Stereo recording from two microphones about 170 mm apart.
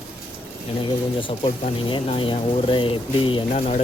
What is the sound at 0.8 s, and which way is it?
Speech, 30° left (ahead or behind).